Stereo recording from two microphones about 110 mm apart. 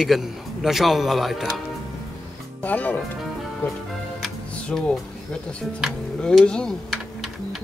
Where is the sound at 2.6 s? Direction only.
15° left (ahead or behind).